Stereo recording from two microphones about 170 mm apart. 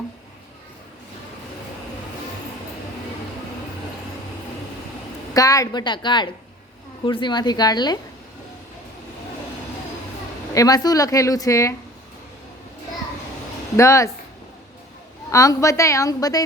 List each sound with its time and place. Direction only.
5.3 s speech: 20° left (ahead or behind)
10.5 s speech: 20° left (ahead or behind)
13.7 s speech: 15° left (ahead or behind)
15.3 s speech: 20° left (ahead or behind)